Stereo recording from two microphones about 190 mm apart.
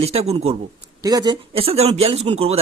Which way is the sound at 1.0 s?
20° right (ahead or behind).